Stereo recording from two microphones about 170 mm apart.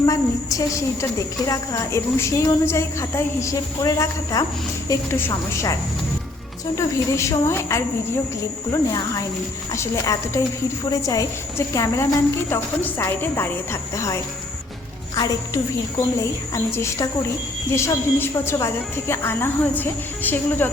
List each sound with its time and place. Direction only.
0.0 s a woman's voice: 20° left (ahead or behind)
6.7 s a woman's voice: 20° left (ahead or behind)